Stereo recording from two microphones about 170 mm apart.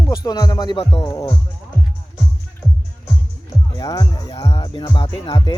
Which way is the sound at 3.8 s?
20° left (ahead or behind).